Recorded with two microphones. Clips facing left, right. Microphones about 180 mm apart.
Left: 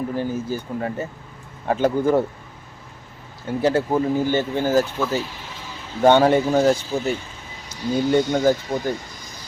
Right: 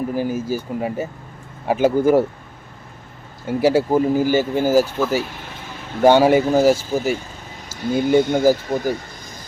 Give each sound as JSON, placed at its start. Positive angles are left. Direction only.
{"t": 0.2, "sound": "speech", "side_deg": -10}
{"t": 3.4, "sound": "speech", "side_deg": -10}